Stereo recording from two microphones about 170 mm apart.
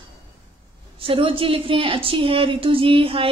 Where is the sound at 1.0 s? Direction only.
30° right (ahead or behind).